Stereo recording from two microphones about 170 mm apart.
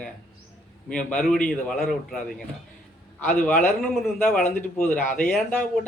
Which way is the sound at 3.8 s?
Centre (ahead or behind).